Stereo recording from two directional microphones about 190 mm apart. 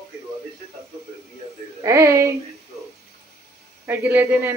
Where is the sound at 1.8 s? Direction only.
15° right (ahead or behind).